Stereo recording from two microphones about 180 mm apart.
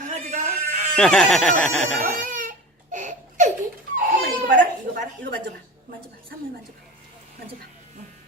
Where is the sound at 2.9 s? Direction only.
45° right (ahead or behind).